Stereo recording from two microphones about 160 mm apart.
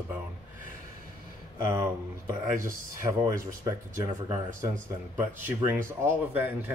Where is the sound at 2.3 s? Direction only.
20° right (ahead or behind).